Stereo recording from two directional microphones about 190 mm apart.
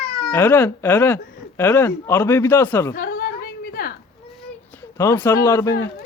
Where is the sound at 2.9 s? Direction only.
50° left (ahead or behind).